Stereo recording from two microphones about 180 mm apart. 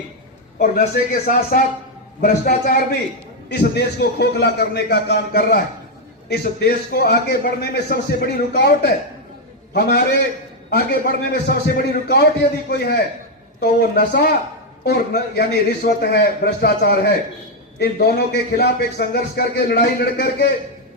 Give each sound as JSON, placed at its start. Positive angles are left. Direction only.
{"t": 1.3, "sound": "a man's voice", "side_deg": 50}
{"t": 3.5, "sound": "a man's voice", "side_deg": 65}